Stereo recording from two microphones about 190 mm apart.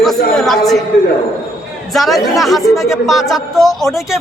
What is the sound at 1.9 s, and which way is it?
A man's voice, centre (ahead or behind).